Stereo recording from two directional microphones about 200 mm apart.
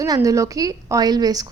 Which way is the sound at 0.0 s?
15° right (ahead or behind).